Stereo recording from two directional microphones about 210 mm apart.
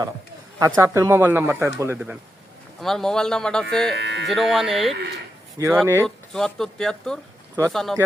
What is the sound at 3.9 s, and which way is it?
Speech, 55° right (ahead or behind).